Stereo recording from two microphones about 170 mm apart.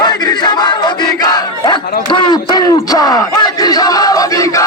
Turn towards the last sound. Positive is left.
turn(degrees=20)  # may be behind; listen again after turning